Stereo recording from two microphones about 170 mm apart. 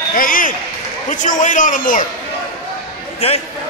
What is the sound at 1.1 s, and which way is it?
Speech, 50° left (ahead or behind).